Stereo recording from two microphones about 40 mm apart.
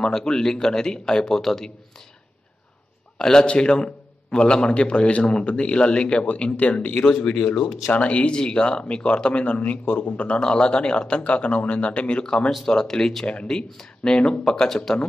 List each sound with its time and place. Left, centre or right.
0.0 s a man's voice: centre
3.2 s a man's voice: centre
6.5 s speech: left
7.1 s a man's voice: centre
7.6 s a man's voice: left
10.1 s a man's voice: left; by 13.3 s centre
13.3 s a man's voice: left